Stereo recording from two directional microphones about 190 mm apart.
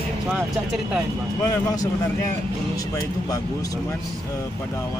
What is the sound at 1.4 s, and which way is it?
Speech, 20° left (ahead or behind).